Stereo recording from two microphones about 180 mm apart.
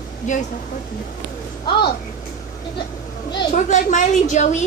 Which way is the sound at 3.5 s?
45° left (ahead or behind).